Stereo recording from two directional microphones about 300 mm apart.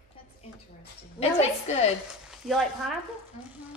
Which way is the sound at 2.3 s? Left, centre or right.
Centre.